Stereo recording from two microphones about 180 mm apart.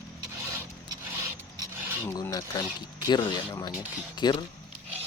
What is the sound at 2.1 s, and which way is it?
Speech, 20° left (ahead or behind).